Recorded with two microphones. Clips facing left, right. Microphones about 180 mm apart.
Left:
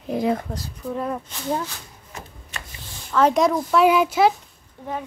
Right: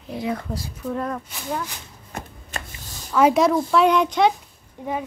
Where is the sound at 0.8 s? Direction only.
5° left (ahead or behind).